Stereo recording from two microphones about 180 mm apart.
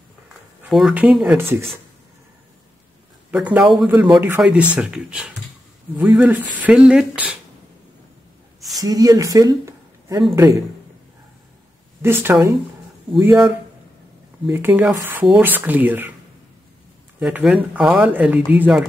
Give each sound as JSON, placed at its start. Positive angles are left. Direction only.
{"t": 0.7, "sound": "speech", "side_deg": 0}
{"t": 3.3, "sound": "speech", "side_deg": -10}
{"t": 8.7, "sound": "a woman's voice", "side_deg": -20}
{"t": 12.0, "sound": "speech", "side_deg": -10}
{"t": 17.2, "sound": "speech", "side_deg": -5}